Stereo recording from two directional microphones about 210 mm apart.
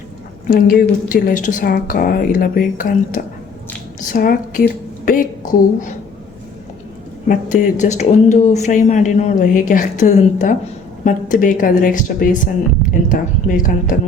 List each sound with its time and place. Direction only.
0.4 s a woman's voice: 45° left (ahead or behind)
7.3 s a woman's voice: 35° left (ahead or behind)